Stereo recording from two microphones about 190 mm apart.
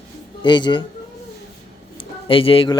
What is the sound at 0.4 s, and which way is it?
Speech, 25° left (ahead or behind).